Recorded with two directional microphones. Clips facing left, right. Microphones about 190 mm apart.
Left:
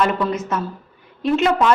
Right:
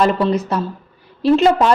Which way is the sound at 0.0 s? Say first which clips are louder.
Right 4 dB; 35° right (ahead or behind).